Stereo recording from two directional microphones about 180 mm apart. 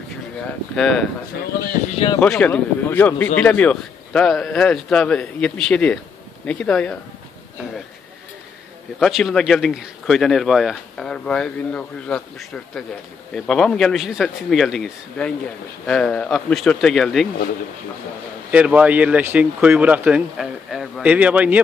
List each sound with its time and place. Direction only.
0.4 s speech: 5° left (ahead or behind)
1.9 s speech: 30° left (ahead or behind)
2.1 s speech: 5° left (ahead or behind)
9.0 s speech: centre (ahead or behind)
18.5 s speech: 5° right (ahead or behind)